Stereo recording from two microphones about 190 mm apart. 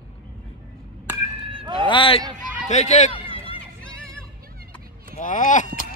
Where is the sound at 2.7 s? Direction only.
35° left (ahead or behind).